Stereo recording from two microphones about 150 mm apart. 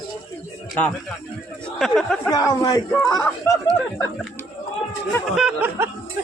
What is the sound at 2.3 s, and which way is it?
A man's voice, 25° left (ahead or behind).